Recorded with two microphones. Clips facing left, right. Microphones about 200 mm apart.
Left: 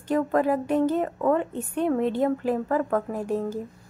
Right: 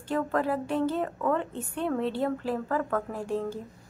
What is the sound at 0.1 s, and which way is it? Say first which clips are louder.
Speech: left 5 dB; 15° left (ahead or behind).